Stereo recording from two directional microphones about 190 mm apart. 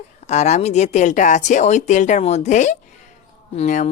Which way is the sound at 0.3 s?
35° left (ahead or behind).